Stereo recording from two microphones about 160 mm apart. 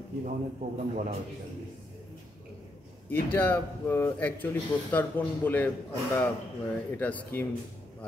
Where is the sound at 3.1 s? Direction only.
10° left (ahead or behind).